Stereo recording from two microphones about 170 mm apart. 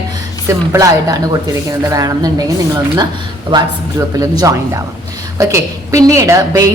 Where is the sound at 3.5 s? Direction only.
30° right (ahead or behind).